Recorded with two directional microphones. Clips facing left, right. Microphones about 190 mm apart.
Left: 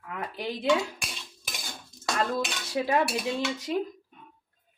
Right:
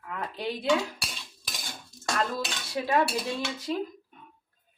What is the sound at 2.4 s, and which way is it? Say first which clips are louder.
Speech: left 2 dB; 20° left (ahead or behind).